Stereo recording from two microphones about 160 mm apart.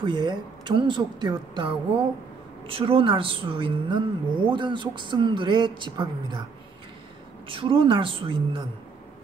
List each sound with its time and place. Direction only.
0.0 s a woman's voice: 30° right (ahead or behind)
7.4 s a woman's voice: 35° right (ahead or behind)